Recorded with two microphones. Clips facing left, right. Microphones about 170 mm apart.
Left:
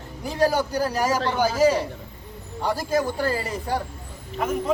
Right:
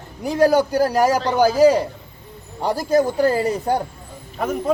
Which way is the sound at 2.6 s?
40° right (ahead or behind).